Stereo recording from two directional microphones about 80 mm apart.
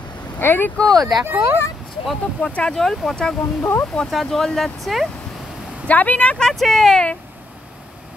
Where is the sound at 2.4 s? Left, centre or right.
Centre.